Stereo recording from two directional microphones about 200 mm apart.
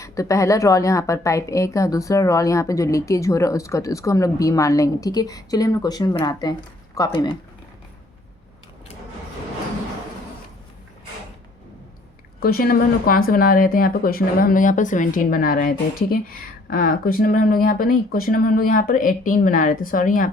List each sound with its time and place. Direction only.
0.0 s a woman's voice: 15° left (ahead or behind)
12.4 s speech: 50° left (ahead or behind)